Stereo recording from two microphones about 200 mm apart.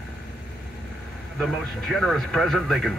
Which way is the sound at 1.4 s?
Centre (ahead or behind).